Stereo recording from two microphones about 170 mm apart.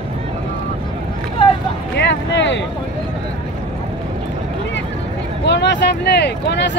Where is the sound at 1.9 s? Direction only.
90° left.